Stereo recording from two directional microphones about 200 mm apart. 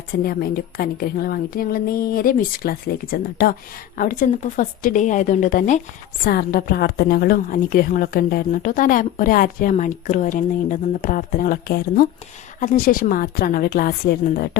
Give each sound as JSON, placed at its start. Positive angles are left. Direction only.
{"t": 0.3, "sound": "a woman's voice", "side_deg": 50}